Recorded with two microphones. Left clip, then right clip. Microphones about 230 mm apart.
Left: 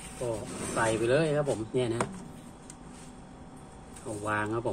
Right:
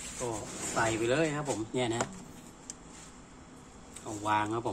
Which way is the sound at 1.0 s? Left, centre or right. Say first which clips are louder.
Left 4 dB; right.